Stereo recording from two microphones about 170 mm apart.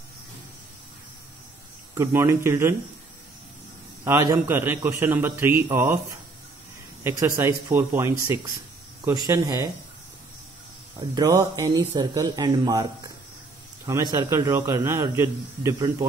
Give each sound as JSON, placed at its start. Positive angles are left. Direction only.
{"t": 2.0, "sound": "a man's voice", "side_deg": -15}
{"t": 4.0, "sound": "a man's voice", "side_deg": -20}
{"t": 7.0, "sound": "a man's voice", "side_deg": -15}
{"t": 11.0, "sound": "a man's voice", "side_deg": -25}